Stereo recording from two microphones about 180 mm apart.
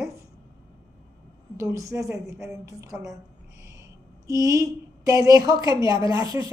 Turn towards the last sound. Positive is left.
turn(degrees=-20)  # may be behind; listen again after turning